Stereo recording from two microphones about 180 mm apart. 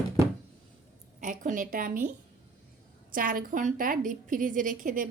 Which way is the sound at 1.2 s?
45° right (ahead or behind).